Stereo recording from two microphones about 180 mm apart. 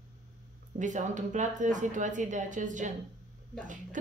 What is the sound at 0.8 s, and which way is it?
A woman's voice, 45° right (ahead or behind).